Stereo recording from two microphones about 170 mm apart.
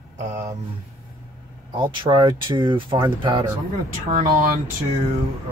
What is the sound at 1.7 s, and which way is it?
Speech, 30° right (ahead or behind).